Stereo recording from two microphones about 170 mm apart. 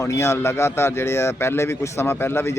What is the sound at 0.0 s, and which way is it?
Speech, 15° left (ahead or behind).